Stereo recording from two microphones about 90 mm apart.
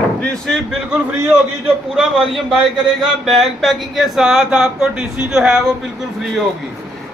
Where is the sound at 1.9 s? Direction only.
5° right (ahead or behind).